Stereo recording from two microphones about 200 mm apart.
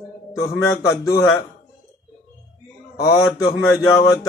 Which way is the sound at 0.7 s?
15° left (ahead or behind).